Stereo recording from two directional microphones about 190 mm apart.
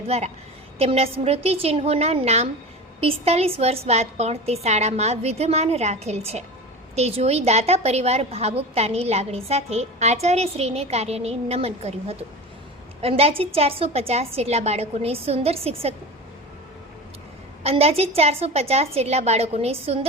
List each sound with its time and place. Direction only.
0.1 s a woman's voice: 35° right (ahead or behind)
17.6 s a woman's voice: 30° right (ahead or behind)